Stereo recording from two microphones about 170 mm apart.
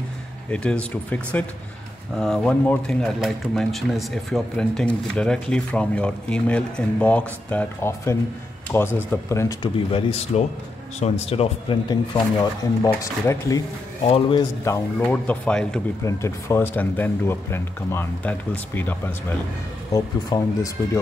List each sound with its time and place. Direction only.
0.5 s speech: 5° left (ahead or behind)
9.6 s speech: 35° left (ahead or behind)
12.8 s speech: 20° left (ahead or behind)
14.0 s speech: 35° left (ahead or behind)
14.7 s speech: 20° left (ahead or behind)
15.0 s speech: 10° left (ahead or behind)
16.0 s speech: 20° left (ahead or behind)
19.9 s speech: 20° left (ahead or behind)